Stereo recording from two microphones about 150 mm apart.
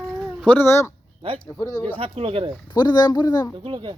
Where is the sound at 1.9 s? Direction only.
40° right (ahead or behind).